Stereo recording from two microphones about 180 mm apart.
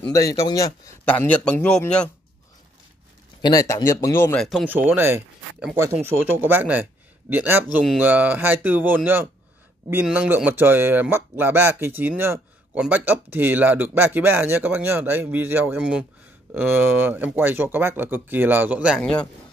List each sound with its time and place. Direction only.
0.1 s speech: 20° left (ahead or behind)
1.0 s a man's voice: 10° left (ahead or behind)
3.4 s a man's voice: 20° left (ahead or behind)
4.4 s speech: centre (ahead or behind)
18.9 s speech: 5° left (ahead or behind)